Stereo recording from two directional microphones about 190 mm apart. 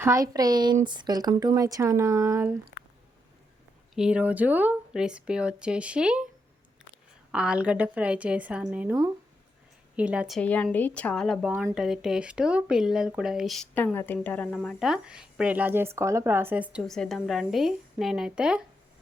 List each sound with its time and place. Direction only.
0.0 s speech: 15° right (ahead or behind)
3.9 s speech: 5° right (ahead or behind)
7.3 s speech: 5° right (ahead or behind)